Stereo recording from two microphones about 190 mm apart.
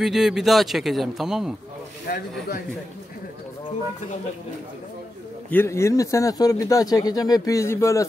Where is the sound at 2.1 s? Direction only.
50° left (ahead or behind).